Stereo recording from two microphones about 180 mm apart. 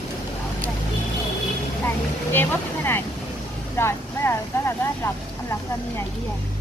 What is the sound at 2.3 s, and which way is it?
Speech, 10° left (ahead or behind).